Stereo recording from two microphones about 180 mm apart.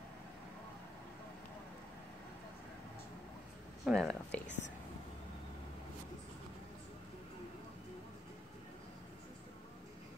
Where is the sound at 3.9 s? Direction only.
5° left (ahead or behind).